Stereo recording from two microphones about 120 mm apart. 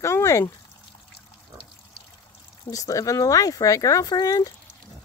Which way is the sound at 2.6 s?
30° left (ahead or behind).